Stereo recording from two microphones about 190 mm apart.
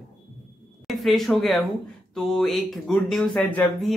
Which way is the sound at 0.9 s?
Centre (ahead or behind).